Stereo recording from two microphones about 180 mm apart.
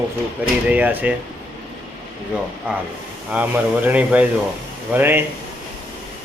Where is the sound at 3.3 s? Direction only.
10° right (ahead or behind).